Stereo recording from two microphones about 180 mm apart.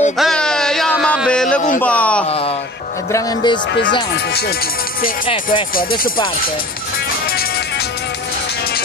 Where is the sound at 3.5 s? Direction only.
90° left.